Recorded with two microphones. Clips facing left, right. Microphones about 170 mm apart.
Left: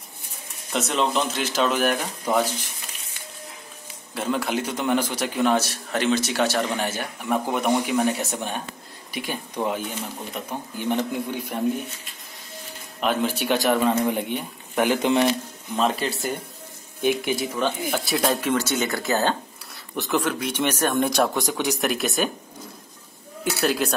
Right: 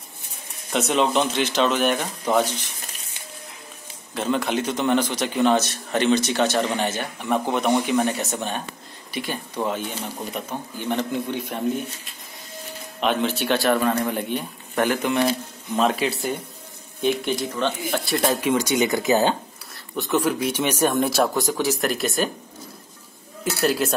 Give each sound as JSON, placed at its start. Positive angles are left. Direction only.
{"t": 0.7, "sound": "a man's voice", "side_deg": 0}
{"t": 4.1, "sound": "a man's voice", "side_deg": 5}
{"t": 13.0, "sound": "speech", "side_deg": 5}
{"t": 15.7, "sound": "a man's voice", "side_deg": 0}
{"t": 18.4, "sound": "speech", "side_deg": -10}
{"t": 20.0, "sound": "a man's voice", "side_deg": -5}
{"t": 23.4, "sound": "a man's voice", "side_deg": 0}